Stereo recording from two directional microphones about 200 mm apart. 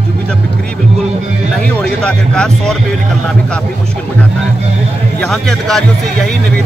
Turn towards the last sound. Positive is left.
turn(degrees=0)  # may be behind; listen again after turning